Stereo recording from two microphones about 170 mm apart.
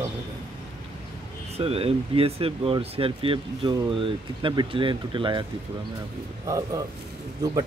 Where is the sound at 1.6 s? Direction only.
35° right (ahead or behind).